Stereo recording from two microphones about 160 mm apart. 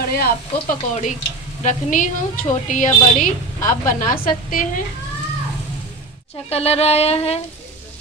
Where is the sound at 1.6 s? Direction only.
50° left (ahead or behind).